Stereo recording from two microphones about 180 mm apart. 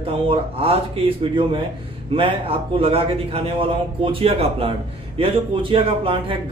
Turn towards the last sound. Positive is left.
turn(degrees=-30)  # may be behind; listen again after turning